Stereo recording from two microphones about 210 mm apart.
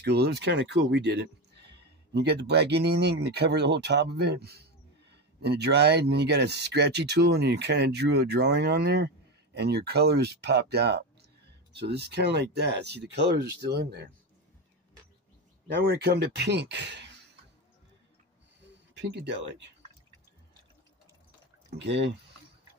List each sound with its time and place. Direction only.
0.0 s speech: 50° right (ahead or behind)
15.7 s speech: 50° right (ahead or behind)
18.9 s speech: 55° right (ahead or behind)
21.7 s speech: 55° right (ahead or behind)